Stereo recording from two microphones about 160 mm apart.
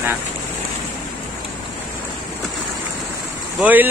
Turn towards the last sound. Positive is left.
turn(degrees=-10)  # may be behind; listen again after turning